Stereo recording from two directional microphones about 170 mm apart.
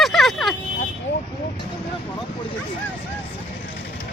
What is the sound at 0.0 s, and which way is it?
Vehicle, centre (ahead or behind).